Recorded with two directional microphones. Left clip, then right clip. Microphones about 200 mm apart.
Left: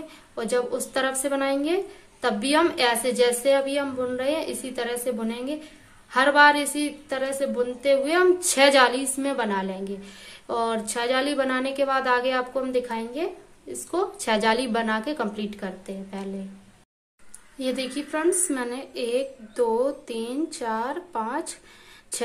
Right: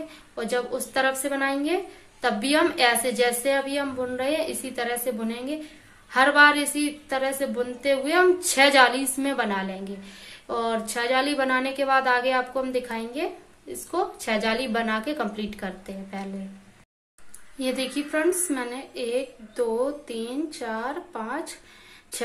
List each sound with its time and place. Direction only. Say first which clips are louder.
0.4 s a woman's voice: left 2 dB; 15° left (ahead or behind)
17.6 s a woman's voice: right 1 dB; 10° left (ahead or behind)